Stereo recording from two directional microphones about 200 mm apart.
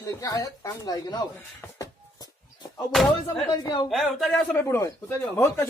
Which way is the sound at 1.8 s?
20° left (ahead or behind).